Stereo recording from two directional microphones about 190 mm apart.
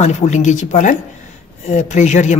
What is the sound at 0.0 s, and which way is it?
Speech, 40° left (ahead or behind).